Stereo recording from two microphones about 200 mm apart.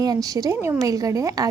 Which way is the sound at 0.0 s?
20° right (ahead or behind).